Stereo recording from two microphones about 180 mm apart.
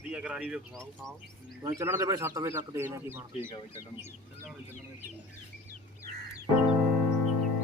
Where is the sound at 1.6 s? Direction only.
15° right (ahead or behind).